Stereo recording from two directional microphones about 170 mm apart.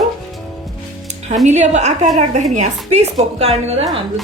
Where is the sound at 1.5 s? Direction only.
45° right (ahead or behind).